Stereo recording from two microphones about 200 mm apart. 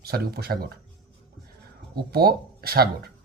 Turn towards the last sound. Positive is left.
turn(degrees=-50)  # may be behind; listen again after turning